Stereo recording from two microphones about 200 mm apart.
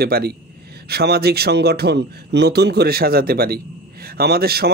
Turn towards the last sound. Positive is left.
turn(degrees=-50)  # may be behind; listen again after turning